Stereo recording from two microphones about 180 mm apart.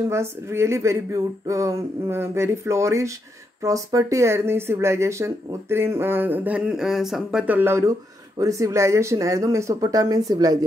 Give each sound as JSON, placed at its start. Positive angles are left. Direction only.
{"t": 0.1, "sound": "speech", "side_deg": -15}